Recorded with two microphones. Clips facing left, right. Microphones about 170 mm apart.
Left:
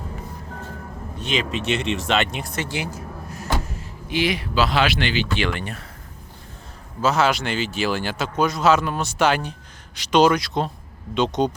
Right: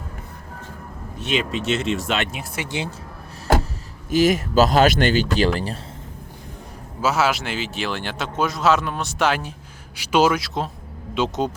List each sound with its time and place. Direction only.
1.2 s speech: centre (ahead or behind)
2.6 s a sound: 25° right (ahead or behind)
4.1 s speech: 45° right (ahead or behind)
7.0 s speech: 5° right (ahead or behind)